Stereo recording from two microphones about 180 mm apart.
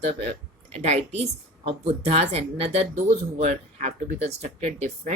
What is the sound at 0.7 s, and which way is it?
A woman's voice, 40° right (ahead or behind).